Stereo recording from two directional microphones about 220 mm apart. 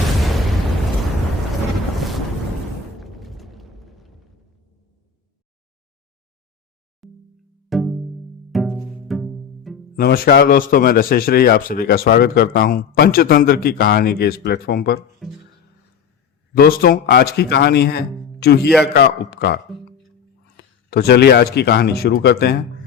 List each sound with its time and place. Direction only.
2.0 s boat: centre (ahead or behind)
3.0 s a sound: centre (ahead or behind)
7.0 s music: centre (ahead or behind)
8.5 s pizzicato: centre (ahead or behind)
9.9 s speech: 45° left (ahead or behind)
16.6 s speech: 40° left (ahead or behind)
20.6 s speech: 45° left (ahead or behind)